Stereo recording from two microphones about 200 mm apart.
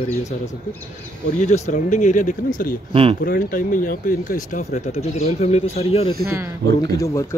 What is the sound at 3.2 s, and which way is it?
Speech, 45° left (ahead or behind).